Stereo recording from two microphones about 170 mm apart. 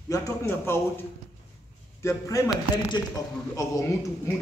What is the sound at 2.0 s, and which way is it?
A man's voice, 20° left (ahead or behind).